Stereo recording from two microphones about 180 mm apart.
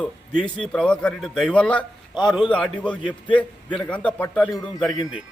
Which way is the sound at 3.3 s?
5° left (ahead or behind).